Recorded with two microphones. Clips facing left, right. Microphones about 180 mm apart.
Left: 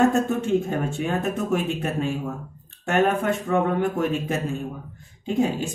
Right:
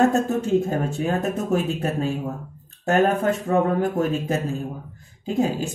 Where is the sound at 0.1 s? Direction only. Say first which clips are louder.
Right 1 dB; 35° right (ahead or behind).